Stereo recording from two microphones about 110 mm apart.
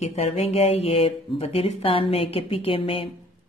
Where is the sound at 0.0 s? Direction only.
70° left (ahead or behind); by 3.1 s 55° left (ahead or behind).